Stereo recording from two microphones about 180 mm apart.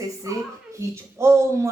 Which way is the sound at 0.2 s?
15° right (ahead or behind).